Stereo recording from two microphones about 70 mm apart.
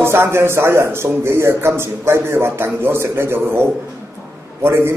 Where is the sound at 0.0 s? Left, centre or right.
Right.